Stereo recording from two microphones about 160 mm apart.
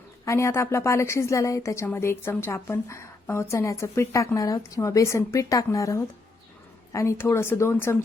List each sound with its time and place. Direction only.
0.3 s a woman's voice: 20° left (ahead or behind)